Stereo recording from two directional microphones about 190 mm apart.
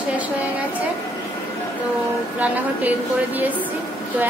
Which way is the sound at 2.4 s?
10° right (ahead or behind).